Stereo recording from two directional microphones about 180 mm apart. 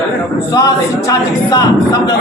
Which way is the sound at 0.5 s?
20° left (ahead or behind).